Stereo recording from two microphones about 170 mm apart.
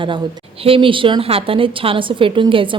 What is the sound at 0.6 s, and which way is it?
A woman's voice, 30° right (ahead or behind).